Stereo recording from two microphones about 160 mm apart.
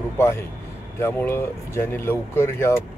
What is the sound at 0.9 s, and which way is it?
Speech, 15° left (ahead or behind).